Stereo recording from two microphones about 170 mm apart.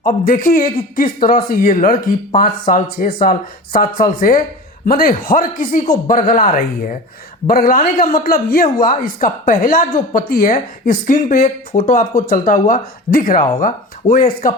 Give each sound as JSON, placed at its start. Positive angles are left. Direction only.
{"t": 0.0, "sound": "speech", "side_deg": 55}